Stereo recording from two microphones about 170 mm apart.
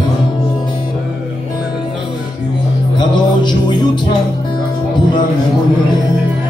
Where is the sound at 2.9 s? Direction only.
25° left (ahead or behind).